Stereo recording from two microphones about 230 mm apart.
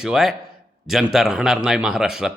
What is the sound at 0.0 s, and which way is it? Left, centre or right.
A man's voice, centre.